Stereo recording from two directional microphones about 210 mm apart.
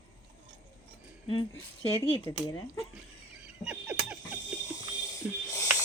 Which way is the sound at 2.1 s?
25° left (ahead or behind).